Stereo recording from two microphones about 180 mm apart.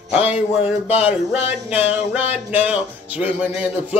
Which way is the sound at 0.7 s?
35° left (ahead or behind).